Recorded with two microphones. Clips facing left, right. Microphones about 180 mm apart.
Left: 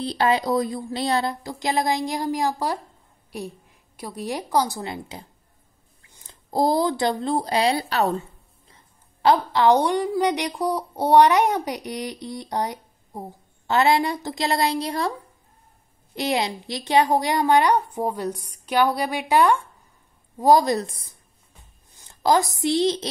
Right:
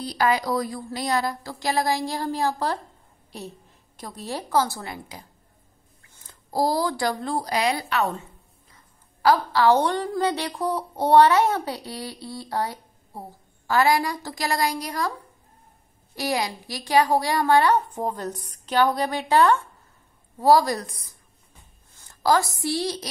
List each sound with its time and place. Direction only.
0.0 s a woman's voice: 25° left (ahead or behind)
16.2 s a woman's voice: 25° left (ahead or behind)